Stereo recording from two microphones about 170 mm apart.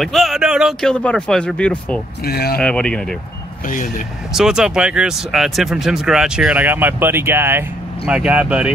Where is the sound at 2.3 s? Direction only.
65° left (ahead or behind).